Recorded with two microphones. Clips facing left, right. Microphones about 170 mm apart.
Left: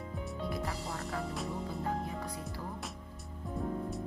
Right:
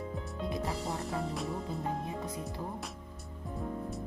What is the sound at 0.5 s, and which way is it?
Music, 20° right (ahead or behind).